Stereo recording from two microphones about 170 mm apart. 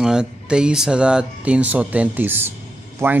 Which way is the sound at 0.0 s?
5° right (ahead or behind).